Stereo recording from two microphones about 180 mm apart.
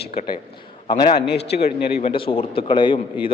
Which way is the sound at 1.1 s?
65° left (ahead or behind).